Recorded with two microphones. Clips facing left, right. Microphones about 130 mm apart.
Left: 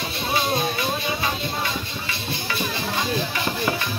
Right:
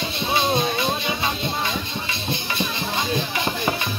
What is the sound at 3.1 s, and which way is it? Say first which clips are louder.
Music: right 1 dB; 20° right (ahead or behind).